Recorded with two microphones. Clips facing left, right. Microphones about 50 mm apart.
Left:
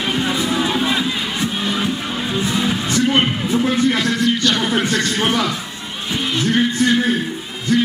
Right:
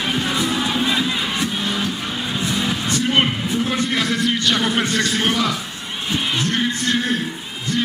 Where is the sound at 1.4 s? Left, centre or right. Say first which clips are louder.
Left 2 dB; left.